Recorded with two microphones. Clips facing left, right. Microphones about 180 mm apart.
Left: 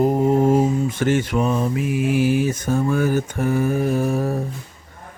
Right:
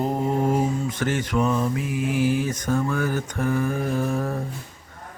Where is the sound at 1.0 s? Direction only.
25° left (ahead or behind).